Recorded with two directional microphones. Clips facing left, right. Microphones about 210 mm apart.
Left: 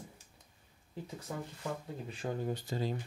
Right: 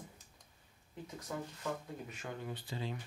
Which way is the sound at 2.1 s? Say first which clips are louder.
Left 10 dB; 35° left (ahead or behind).